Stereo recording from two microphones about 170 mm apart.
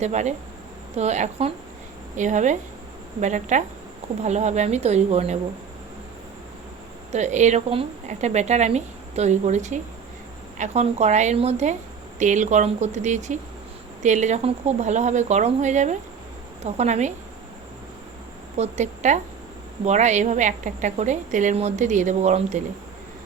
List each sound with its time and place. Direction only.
0.0 s a woman's voice: 40° right (ahead or behind)
7.1 s a woman's voice: 45° right (ahead or behind)
18.5 s a woman's voice: 40° right (ahead or behind)